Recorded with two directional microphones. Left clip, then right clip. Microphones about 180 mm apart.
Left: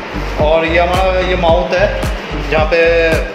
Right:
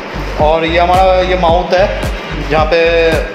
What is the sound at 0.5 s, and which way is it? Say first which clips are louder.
Speech: right 1 dB; 25° right (ahead or behind).